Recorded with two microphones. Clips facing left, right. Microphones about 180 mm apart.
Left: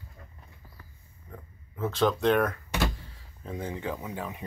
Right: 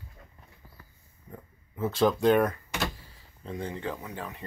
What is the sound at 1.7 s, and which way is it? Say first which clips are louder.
Speech: right 1 dB; 5° right (ahead or behind).